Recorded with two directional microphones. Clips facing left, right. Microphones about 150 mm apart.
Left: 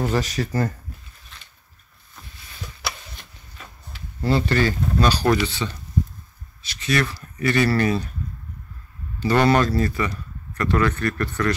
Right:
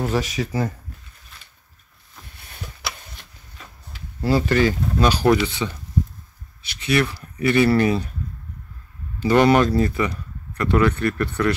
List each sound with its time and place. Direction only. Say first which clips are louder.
0.0 s speech: even; centre (ahead or behind)
3.9 s speech: right 1 dB; 10° right (ahead or behind)
6.9 s speech: right 2 dB; 15° right (ahead or behind)
9.2 s speech: right 3 dB; 15° right (ahead or behind)